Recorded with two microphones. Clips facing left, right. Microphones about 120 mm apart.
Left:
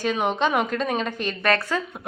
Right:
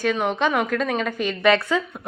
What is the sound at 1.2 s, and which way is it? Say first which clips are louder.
Speech: right 6 dB; 15° right (ahead or behind).